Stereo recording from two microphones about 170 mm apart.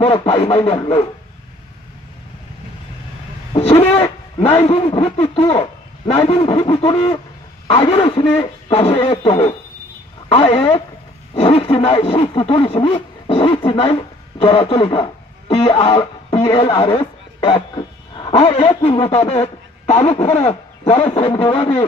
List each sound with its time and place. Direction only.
0.0 s speech: 35° left (ahead or behind)
3.5 s a man's voice: 35° left (ahead or behind)